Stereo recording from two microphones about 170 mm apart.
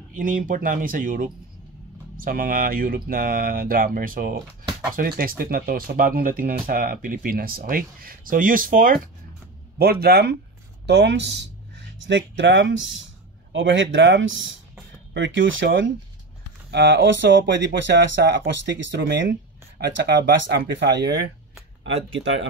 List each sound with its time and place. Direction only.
0.1 s speech: 55° right (ahead or behind)
9.8 s speech: 65° right (ahead or behind)
10.9 s speech: 85° right